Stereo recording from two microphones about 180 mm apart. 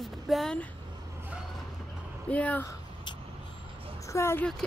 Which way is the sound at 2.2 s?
10° left (ahead or behind).